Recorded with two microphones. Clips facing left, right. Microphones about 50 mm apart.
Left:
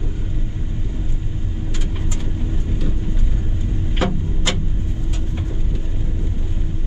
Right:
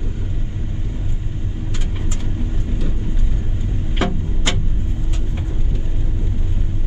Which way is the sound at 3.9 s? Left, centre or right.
Right.